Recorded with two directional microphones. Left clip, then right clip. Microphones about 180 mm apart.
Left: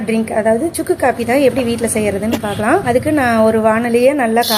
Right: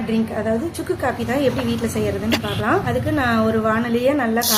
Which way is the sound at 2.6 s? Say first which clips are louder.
Left 9 dB; 30° left (ahead or behind).